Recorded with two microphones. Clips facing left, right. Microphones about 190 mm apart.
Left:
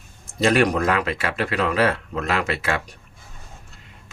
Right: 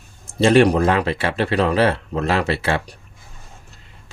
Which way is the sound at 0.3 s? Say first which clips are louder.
Right 5 dB; 30° right (ahead or behind).